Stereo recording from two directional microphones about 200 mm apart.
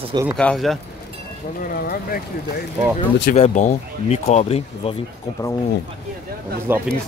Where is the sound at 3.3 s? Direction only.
35° left (ahead or behind).